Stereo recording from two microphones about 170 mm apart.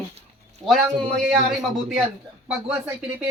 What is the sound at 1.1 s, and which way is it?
Speech, centre (ahead or behind).